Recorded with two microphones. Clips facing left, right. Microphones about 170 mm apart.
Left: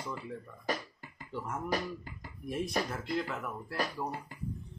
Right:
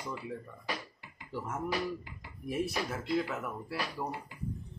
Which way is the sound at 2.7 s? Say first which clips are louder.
Left 2 dB; 45° left (ahead or behind).